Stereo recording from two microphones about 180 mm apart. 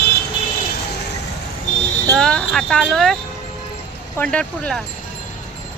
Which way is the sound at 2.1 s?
5° left (ahead or behind).